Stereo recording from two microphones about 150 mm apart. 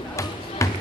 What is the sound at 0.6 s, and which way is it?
Music, 20° left (ahead or behind).